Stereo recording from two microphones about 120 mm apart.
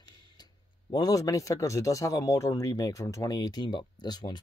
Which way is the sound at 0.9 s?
30° left (ahead or behind).